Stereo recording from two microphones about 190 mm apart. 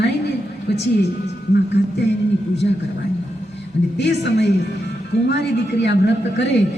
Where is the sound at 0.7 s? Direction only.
60° left (ahead or behind).